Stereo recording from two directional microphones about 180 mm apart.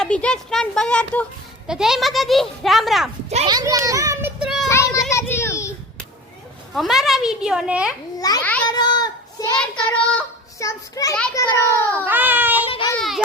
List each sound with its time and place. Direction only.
0.0 s speech: 5° left (ahead or behind)
3.4 s a sound: 20° right (ahead or behind); by 4.7 s 5° right (ahead or behind)
4.7 s children playing: 15° left (ahead or behind)
6.7 s speech: centre (ahead or behind)
8.6 s child singing: 25° left (ahead or behind)
9.6 s child singing: 5° left (ahead or behind)
10.6 s a child's voice: 20° left (ahead or behind)
12.0 s baby cry: 10° right (ahead or behind)
12.7 s child singing: 25° left (ahead or behind)
13.0 s a sound: centre (ahead or behind)